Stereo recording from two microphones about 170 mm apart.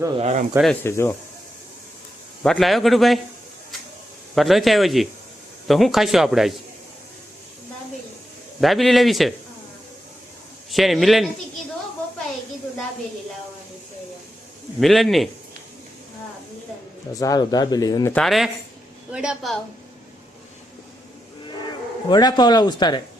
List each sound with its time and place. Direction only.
0.2 s speech: 40° right (ahead or behind)
0.7 s speech: 15° left (ahead or behind)
2.4 s speech: centre (ahead or behind)
4.4 s speech: centre (ahead or behind)
8.6 s speech: centre (ahead or behind)
10.7 s speech: centre (ahead or behind)
14.8 s speech: centre (ahead or behind)
17.2 s speech: 20° left (ahead or behind)
18.1 s speech: centre (ahead or behind)
22.1 s speech: 25° left (ahead or behind)